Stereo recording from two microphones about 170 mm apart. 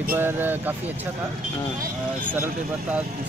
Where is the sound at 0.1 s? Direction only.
10° right (ahead or behind).